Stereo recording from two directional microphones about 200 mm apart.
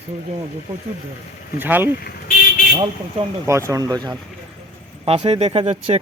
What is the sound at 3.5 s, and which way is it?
Speech, 15° right (ahead or behind).